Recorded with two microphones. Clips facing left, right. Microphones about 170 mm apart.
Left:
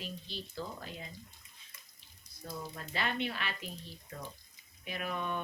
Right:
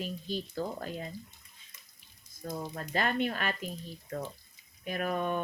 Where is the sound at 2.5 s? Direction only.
45° right (ahead or behind).